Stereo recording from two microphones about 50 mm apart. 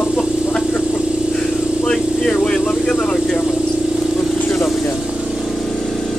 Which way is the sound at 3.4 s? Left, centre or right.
Centre.